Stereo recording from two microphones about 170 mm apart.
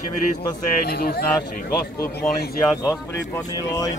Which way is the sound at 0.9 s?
65° left (ahead or behind).